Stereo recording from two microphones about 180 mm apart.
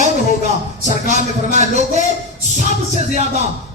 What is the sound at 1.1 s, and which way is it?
Speech, 40° right (ahead or behind).